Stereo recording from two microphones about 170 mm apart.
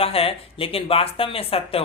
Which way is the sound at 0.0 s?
35° left (ahead or behind).